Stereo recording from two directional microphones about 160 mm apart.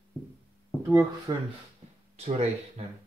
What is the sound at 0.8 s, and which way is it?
Speech, 20° right (ahead or behind).